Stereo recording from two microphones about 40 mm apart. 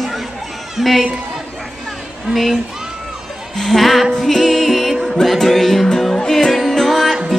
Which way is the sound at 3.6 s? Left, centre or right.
Centre.